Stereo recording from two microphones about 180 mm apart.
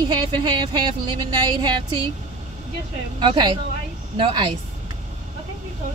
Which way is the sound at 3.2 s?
25° right (ahead or behind).